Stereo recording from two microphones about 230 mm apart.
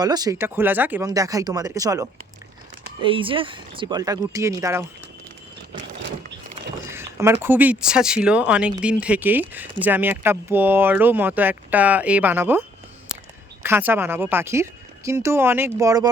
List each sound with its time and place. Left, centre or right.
0.0 s speech: centre
6.9 s speech: centre